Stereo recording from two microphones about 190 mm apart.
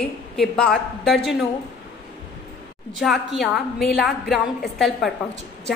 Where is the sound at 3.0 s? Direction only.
Centre (ahead or behind).